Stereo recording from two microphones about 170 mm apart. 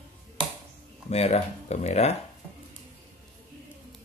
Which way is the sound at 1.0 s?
40° left (ahead or behind).